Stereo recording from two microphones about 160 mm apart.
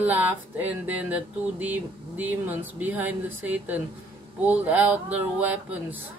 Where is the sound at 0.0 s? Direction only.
10° right (ahead or behind).